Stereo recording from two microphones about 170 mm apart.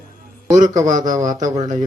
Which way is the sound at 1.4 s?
40° right (ahead or behind).